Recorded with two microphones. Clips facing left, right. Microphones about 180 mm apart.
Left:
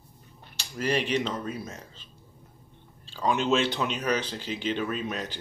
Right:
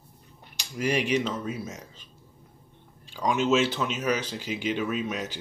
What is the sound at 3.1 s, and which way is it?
Speech, 10° right (ahead or behind).